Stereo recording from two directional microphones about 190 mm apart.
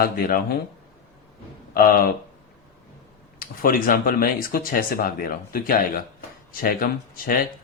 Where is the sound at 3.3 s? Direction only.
50° left (ahead or behind).